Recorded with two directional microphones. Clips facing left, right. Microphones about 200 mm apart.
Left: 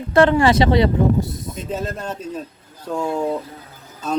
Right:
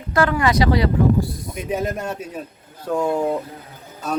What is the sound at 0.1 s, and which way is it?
Speech, 25° left (ahead or behind).